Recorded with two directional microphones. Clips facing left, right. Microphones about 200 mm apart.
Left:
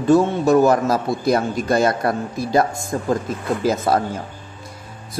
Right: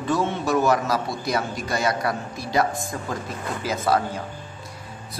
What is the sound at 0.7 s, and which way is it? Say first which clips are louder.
A man's voice: left 5 dB; 50° left (ahead or behind).